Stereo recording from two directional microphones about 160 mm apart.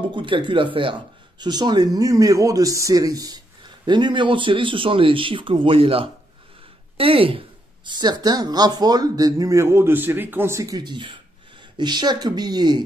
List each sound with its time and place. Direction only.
0.1 s speech: 30° right (ahead or behind)